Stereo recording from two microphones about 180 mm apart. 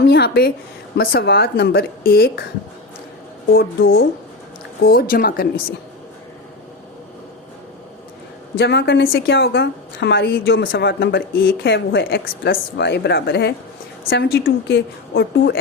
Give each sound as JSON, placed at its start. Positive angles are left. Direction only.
{"t": 0.0, "sound": "a woman's voice", "side_deg": 65}
{"t": 3.5, "sound": "a woman's voice", "side_deg": 55}
{"t": 8.5, "sound": "a woman's voice", "side_deg": 65}